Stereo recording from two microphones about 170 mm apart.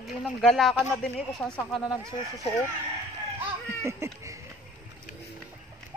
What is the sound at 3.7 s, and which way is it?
Laughter, 15° right (ahead or behind).